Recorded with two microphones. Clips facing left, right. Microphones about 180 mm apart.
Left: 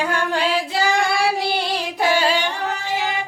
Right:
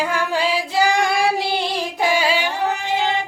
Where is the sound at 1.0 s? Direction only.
20° right (ahead or behind).